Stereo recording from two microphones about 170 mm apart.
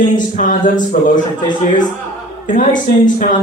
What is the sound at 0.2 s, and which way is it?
Speech, 50° left (ahead or behind).